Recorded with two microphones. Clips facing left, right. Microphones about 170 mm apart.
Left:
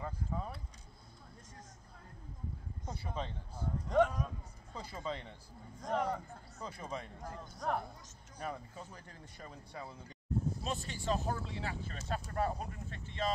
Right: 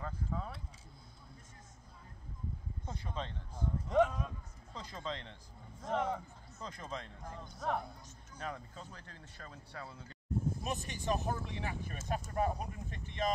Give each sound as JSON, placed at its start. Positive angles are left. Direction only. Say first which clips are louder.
{"t": 0.0, "sound": "speech", "louder": "even", "side_deg": 10}
{"t": 2.8, "sound": "a sound", "louder": "left 1 dB", "side_deg": 10}
{"t": 4.7, "sound": "speech", "louder": "left 1 dB", "side_deg": 10}
{"t": 5.8, "sound": "speech", "louder": "even", "side_deg": 0}
{"t": 6.6, "sound": "speech", "louder": "left 1 dB", "side_deg": 10}
{"t": 10.6, "sound": "speech", "louder": "even", "side_deg": -15}